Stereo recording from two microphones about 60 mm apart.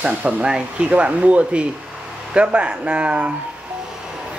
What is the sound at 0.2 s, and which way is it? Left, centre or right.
Speech, centre.